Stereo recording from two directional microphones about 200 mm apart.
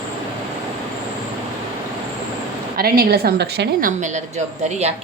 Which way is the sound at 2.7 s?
50° right (ahead or behind).